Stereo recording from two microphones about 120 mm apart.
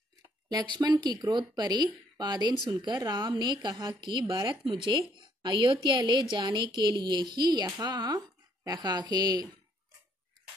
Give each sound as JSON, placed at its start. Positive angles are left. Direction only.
{"t": 0.5, "sound": "a woman's voice", "side_deg": -35}